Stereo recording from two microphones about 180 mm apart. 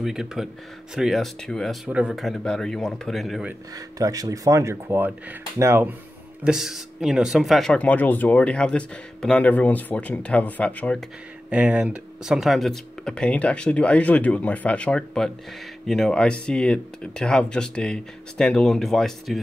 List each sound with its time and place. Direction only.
0.0 s speech: 5° right (ahead or behind)
3.7 s speech: 20° right (ahead or behind)
6.4 s speech: centre (ahead or behind)
11.5 s speech: 5° right (ahead or behind)